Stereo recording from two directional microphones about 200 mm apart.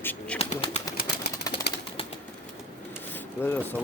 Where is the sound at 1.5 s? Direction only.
15° left (ahead or behind).